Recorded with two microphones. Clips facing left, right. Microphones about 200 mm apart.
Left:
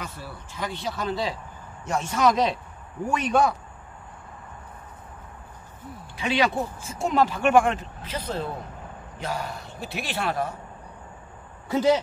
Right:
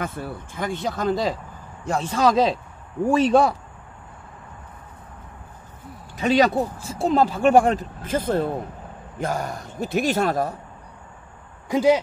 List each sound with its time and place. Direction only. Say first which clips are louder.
0.0 s speech: right 8 dB; 55° right (ahead or behind); by 3.5 s 30° right (ahead or behind)
6.1 s speech: right 6 dB; 40° right (ahead or behind)
8.0 s speech: right 11 dB; 50° right (ahead or behind)
11.7 s speech: right 3 dB; 10° right (ahead or behind)